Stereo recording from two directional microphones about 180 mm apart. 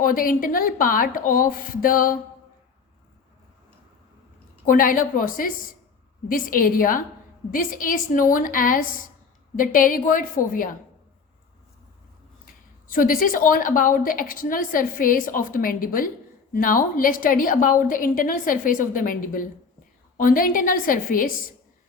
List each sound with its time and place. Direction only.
0.0 s a woman's voice: 50° left (ahead or behind)
4.6 s a woman's voice: 50° left (ahead or behind)
12.5 s a woman's voice: 50° left (ahead or behind)